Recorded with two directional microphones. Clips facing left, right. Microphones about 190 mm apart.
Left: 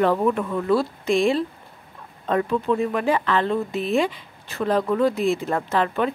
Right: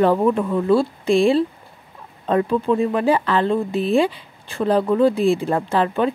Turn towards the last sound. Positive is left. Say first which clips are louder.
# right 3 dB
turn(degrees=-30)  # may be behind; listen again after turning